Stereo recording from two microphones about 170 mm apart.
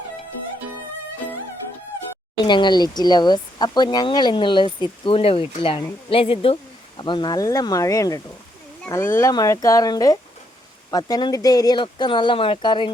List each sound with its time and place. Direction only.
2.4 s speech: 25° left (ahead or behind)